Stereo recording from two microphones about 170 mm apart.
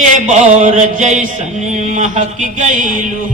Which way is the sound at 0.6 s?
45° right (ahead or behind).